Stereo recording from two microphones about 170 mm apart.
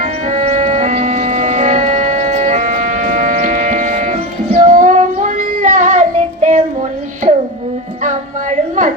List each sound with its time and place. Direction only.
0.0 s music: 45° right (ahead or behind)
8.0 s music: 45° right (ahead or behind)